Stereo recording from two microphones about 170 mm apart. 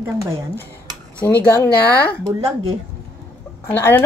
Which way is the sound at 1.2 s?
10° left (ahead or behind).